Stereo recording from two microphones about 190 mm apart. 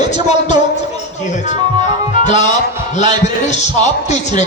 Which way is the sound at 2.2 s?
40° left (ahead or behind).